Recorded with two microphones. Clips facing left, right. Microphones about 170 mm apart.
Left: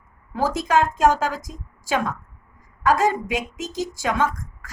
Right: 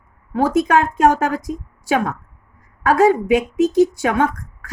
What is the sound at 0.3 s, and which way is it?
A woman's voice, 60° right (ahead or behind).